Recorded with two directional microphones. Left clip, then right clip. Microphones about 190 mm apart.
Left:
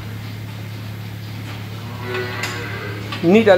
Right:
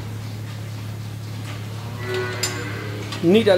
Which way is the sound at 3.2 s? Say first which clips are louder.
Left 3 dB; 10° right (ahead or behind).